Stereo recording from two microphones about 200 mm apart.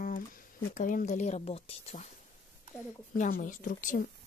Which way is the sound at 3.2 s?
40° left (ahead or behind).